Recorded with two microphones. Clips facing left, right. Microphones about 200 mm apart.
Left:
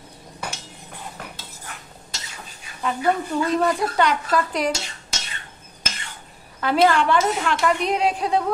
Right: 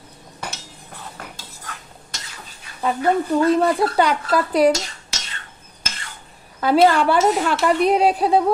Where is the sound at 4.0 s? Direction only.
35° right (ahead or behind).